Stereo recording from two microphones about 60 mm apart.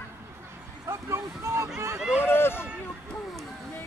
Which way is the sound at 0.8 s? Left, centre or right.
Right.